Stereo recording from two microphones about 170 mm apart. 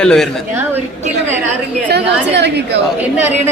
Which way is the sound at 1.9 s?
80° right.